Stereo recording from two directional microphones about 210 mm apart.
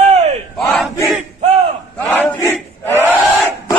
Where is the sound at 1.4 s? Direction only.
30° right (ahead or behind).